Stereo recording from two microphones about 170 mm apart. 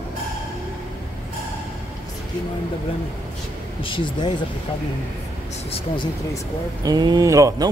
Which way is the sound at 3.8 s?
30° left (ahead or behind).